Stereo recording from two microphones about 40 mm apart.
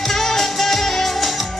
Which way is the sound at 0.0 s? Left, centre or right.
Centre.